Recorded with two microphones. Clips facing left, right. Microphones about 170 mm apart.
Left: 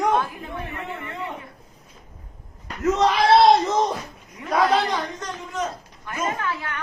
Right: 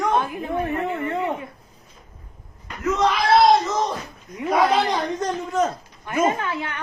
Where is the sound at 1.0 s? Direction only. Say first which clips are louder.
Right 8 dB; 45° right (ahead or behind).